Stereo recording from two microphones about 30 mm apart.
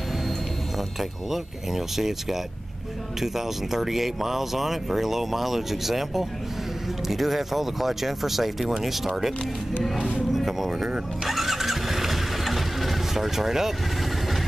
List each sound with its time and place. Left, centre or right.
1.3 s speech: centre
9.9 s speech: right
10.3 s a sound: centre
11.2 s engine starting: centre